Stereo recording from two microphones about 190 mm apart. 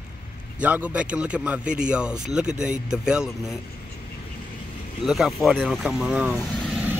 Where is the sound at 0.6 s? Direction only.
5° right (ahead or behind).